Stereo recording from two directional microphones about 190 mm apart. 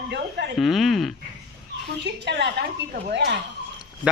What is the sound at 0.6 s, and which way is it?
Speech, centre (ahead or behind).